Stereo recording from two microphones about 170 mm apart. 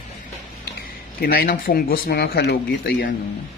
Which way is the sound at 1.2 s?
65° left (ahead or behind).